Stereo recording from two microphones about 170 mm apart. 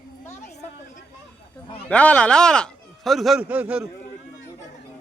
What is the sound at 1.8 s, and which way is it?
A man's voice, 5° left (ahead or behind).